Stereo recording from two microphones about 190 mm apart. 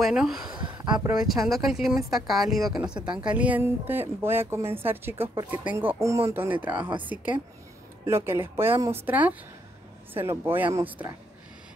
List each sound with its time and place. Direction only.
0.0 s speech: centre (ahead or behind)
0.6 s a sound: 20° right (ahead or behind)
1.1 s speech: centre (ahead or behind)
2.7 s speech: 20° right (ahead or behind)
3.0 s speech: 5° right (ahead or behind)